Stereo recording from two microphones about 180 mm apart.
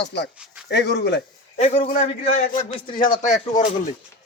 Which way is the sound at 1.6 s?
40° left (ahead or behind).